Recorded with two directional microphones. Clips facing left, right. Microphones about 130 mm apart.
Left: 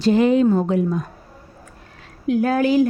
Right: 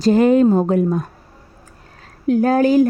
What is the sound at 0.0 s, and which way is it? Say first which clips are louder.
Speech: right 3 dB; 45° right (ahead or behind).